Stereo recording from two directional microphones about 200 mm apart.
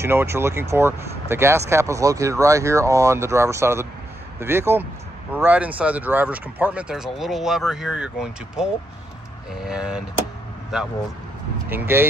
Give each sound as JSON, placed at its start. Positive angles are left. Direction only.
{"t": 0.0, "sound": "speech", "side_deg": -10}